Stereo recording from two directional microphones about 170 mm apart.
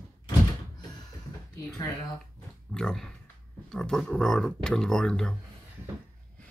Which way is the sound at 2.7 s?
5° left (ahead or behind).